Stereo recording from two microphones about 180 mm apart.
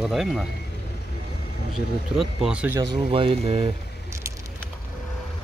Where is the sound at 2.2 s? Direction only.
5° right (ahead or behind).